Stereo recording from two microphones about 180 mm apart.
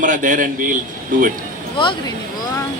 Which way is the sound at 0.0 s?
45° right (ahead or behind).